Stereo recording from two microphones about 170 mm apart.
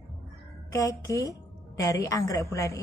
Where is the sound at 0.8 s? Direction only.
20° left (ahead or behind).